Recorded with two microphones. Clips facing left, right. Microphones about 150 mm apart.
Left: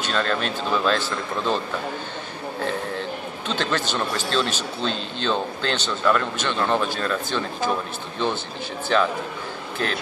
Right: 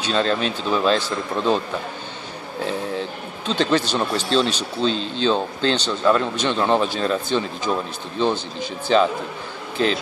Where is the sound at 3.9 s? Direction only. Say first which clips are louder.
Right 4 dB; 20° right (ahead or behind).